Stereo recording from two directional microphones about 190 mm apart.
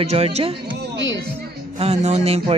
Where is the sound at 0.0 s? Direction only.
35° right (ahead or behind).